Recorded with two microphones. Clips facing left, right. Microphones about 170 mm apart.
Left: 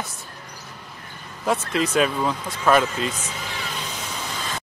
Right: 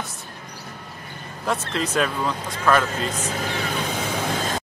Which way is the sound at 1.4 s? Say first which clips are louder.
Left 2 dB; centre (ahead or behind).